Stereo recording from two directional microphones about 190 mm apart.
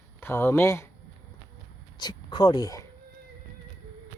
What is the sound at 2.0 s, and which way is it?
Speech, 20° left (ahead or behind).